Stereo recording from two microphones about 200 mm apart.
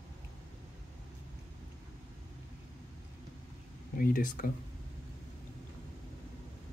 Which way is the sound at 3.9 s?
45° left (ahead or behind).